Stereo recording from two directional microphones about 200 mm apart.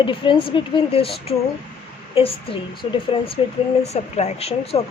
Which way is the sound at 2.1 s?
30° left (ahead or behind).